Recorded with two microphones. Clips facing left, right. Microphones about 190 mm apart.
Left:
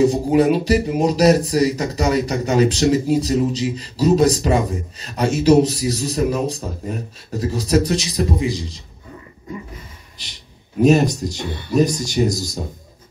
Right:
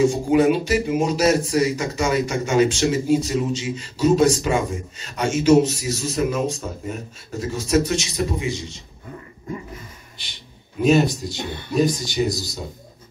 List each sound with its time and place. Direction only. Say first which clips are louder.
0.0 s speech: left 2 dB; 35° left (ahead or behind)
10.8 s speech: left 3 dB; 40° left (ahead or behind)